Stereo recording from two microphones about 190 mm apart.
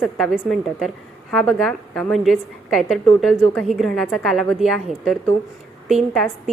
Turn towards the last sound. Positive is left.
turn(degrees=0)  # may be behind; listen again after turning